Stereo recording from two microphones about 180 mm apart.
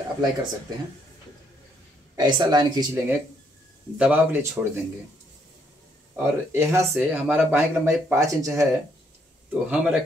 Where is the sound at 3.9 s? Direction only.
10° right (ahead or behind).